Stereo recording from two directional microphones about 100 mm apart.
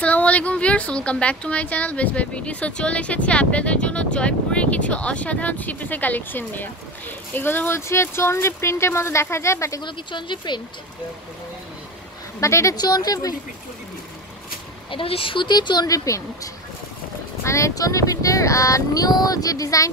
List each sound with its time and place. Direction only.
0.0 s a woman's voice: 15° left (ahead or behind); by 9.8 s 30° left (ahead or behind)
9.8 s speech: 50° left (ahead or behind)
12.4 s child singing: 30° left (ahead or behind)
12.7 s child singing: 45° left (ahead or behind)
14.9 s speech: 65° left (ahead or behind); by 16.2 s 40° left (ahead or behind)
17.4 s child singing: 30° left (ahead or behind)